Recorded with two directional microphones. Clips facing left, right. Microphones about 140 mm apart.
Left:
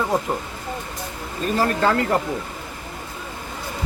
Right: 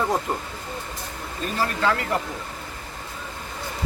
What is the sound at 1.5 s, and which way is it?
Speech, 40° left (ahead or behind).